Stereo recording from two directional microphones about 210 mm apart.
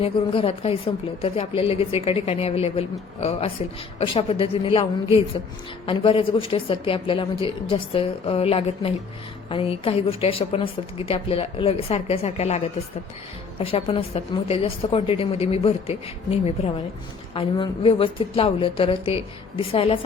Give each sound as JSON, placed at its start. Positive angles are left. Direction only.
{"t": 0.0, "sound": "a woman's voice", "side_deg": 25}